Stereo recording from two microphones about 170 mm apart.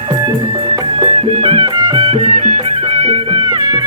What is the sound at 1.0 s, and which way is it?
Music, 35° right (ahead or behind).